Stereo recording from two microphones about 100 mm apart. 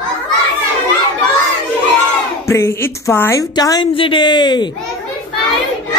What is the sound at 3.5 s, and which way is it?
Speech, 45° left (ahead or behind).